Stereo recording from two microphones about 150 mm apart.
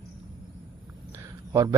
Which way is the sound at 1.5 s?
20° right (ahead or behind).